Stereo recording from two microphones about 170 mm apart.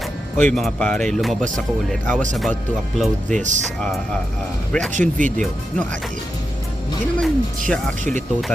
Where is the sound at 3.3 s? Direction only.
45° right (ahead or behind).